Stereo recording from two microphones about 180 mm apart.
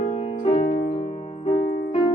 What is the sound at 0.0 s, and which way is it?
Music, 35° left (ahead or behind).